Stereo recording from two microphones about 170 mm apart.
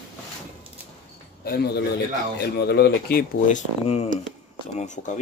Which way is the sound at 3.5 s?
40° left (ahead or behind).